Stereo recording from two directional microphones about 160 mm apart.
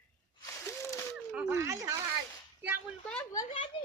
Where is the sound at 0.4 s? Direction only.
20° left (ahead or behind).